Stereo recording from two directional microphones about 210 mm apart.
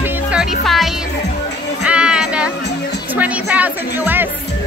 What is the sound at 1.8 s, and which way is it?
Child singing, 5° right (ahead or behind).